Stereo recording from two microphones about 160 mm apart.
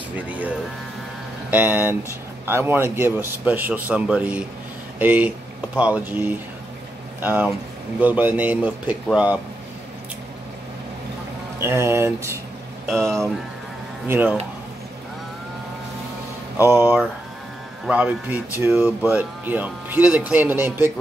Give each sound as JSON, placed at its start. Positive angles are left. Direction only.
{"t": 0.1, "sound": "speech", "side_deg": -10}
{"t": 1.5, "sound": "speech", "side_deg": -10}
{"t": 11.5, "sound": "speech", "side_deg": -15}
{"t": 13.0, "sound": "speech", "side_deg": 5}
{"t": 14.0, "sound": "speech", "side_deg": -15}
{"t": 16.5, "sound": "speech", "side_deg": -15}